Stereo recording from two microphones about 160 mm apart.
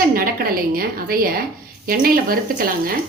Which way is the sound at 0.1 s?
65° right (ahead or behind).